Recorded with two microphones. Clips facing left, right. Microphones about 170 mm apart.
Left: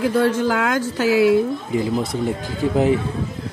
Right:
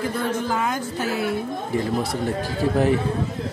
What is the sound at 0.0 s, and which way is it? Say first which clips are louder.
Speech: left 7 dB; 90° left.